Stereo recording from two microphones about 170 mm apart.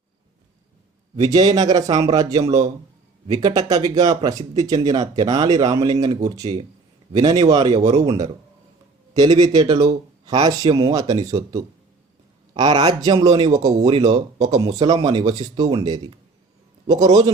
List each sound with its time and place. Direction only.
1.1 s a man's voice: 25° right (ahead or behind)